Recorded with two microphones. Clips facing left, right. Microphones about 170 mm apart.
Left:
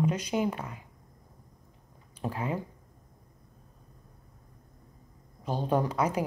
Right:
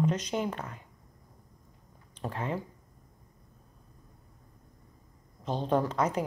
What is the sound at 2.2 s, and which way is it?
Speech, 10° left (ahead or behind).